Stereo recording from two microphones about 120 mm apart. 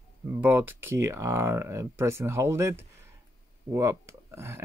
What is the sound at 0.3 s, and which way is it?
Speech, 15° right (ahead or behind).